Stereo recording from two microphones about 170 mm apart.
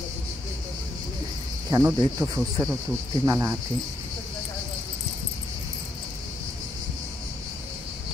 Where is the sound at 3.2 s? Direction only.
15° right (ahead or behind).